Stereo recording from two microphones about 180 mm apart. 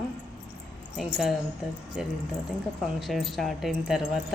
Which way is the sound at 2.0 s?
Centre (ahead or behind).